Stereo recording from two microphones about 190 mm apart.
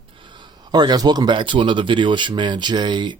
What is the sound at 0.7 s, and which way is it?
Speech, 20° right (ahead or behind).